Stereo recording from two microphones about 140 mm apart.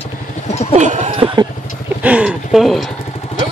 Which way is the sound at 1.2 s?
35° right (ahead or behind).